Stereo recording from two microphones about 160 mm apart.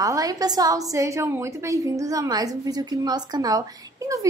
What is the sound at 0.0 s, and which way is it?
A woman's voice, 20° right (ahead or behind).